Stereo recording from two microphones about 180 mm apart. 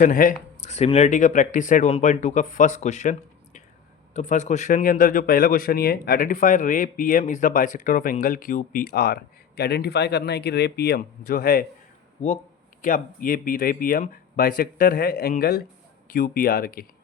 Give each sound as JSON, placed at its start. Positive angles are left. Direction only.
{"t": 0.0, "sound": "a man's voice", "side_deg": 50}
{"t": 12.8, "sound": "a man's voice", "side_deg": 50}